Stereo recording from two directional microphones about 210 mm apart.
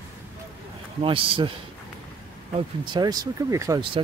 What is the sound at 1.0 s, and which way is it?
Speech, 25° right (ahead or behind).